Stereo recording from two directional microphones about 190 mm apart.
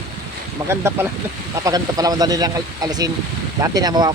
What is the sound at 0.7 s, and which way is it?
Speech, 10° right (ahead or behind).